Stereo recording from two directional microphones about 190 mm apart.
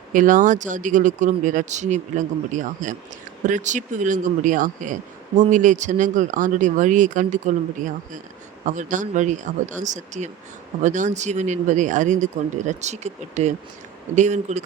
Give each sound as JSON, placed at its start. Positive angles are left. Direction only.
{"t": 0.1, "sound": "speech", "side_deg": -45}
{"t": 8.6, "sound": "speech", "side_deg": -40}